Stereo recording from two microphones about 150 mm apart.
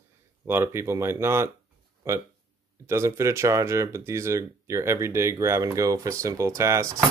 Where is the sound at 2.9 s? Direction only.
20° right (ahead or behind).